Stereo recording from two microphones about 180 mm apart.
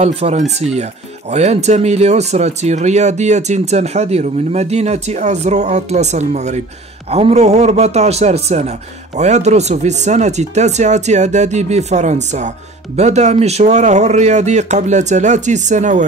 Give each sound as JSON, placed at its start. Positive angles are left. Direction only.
{"t": 0.0, "sound": "a man's voice", "side_deg": -35}